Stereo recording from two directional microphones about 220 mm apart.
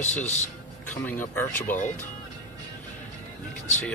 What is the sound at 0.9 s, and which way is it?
Speech, 10° left (ahead or behind).